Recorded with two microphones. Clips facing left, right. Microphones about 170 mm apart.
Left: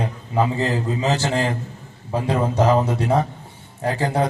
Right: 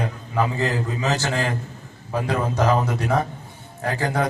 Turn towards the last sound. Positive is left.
turn(degrees=30)  # may be behind; listen again after turning